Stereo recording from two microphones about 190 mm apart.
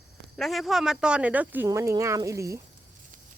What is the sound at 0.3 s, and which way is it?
Speech, centre (ahead or behind).